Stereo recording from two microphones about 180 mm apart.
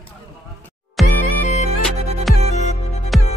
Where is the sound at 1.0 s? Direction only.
Centre (ahead or behind).